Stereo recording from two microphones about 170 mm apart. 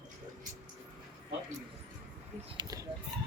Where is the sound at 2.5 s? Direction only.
25° right (ahead or behind).